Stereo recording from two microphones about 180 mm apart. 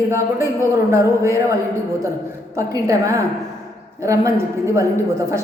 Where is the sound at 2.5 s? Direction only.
20° right (ahead or behind).